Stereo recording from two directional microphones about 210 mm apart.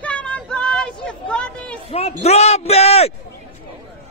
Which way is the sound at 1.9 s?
30° left (ahead or behind).